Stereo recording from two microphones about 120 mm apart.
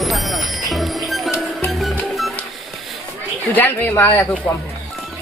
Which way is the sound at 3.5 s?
15° left (ahead or behind).